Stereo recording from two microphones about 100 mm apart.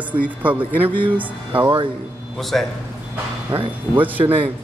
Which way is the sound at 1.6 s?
45° right (ahead or behind).